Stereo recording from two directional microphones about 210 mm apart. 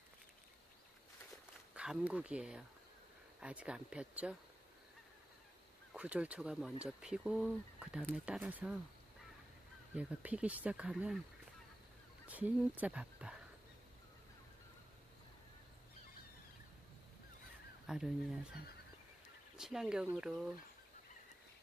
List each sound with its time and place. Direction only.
1.7 s speech: 5° right (ahead or behind)
5.9 s speech: 5° right (ahead or behind)
9.9 s speech: 5° right (ahead or behind)
12.3 s speech: 5° right (ahead or behind)
17.8 s speech: centre (ahead or behind)
19.5 s speech: centre (ahead or behind)